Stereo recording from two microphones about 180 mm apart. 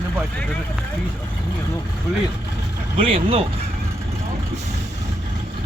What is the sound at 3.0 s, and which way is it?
Speech, 30° right (ahead or behind).